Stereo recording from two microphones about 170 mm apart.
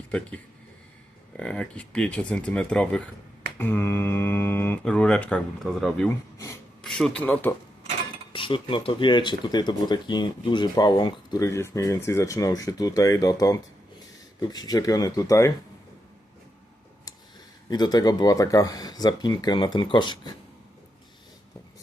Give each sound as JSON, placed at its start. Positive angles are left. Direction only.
{"t": 1.4, "sound": "speech", "side_deg": 5}
{"t": 8.3, "sound": "speech", "side_deg": 30}
{"t": 17.7, "sound": "speech", "side_deg": 25}